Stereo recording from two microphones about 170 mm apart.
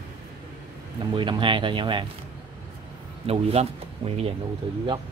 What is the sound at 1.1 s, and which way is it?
Speech, 30° right (ahead or behind).